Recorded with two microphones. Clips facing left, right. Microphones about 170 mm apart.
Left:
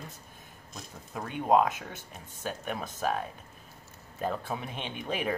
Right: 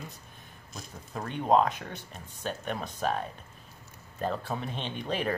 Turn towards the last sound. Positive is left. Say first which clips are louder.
# right 1 dB
turn(degrees=10)  # may be behind; listen again after turning